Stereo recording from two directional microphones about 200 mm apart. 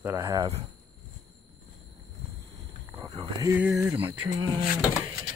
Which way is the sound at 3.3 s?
15° right (ahead or behind).